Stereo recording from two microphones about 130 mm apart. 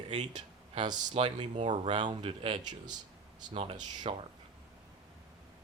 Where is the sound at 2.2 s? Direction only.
40° right (ahead or behind).